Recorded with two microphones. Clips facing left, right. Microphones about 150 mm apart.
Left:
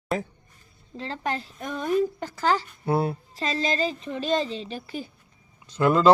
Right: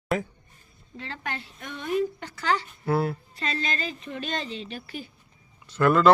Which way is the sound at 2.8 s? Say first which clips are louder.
Even; 25° left (ahead or behind).